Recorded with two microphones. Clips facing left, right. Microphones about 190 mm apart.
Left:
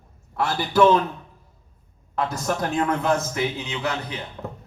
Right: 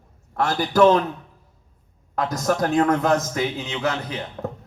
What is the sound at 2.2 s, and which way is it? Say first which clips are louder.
A man's voice: right 3 dB; 40° right (ahead or behind).